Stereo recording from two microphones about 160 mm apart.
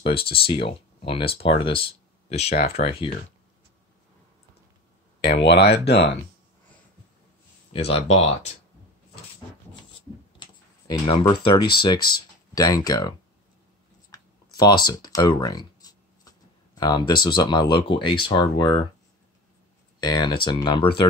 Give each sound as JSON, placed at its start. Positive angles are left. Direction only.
{"t": 0.0, "sound": "speech", "side_deg": 35}
{"t": 5.2, "sound": "speech", "side_deg": 90}
{"t": 7.7, "sound": "speech", "side_deg": 40}
{"t": 10.4, "sound": "a sound", "side_deg": 30}
{"t": 12.5, "sound": "speech", "side_deg": 25}
{"t": 14.1, "sound": "speech", "side_deg": 25}
{"t": 20.0, "sound": "speech", "side_deg": 25}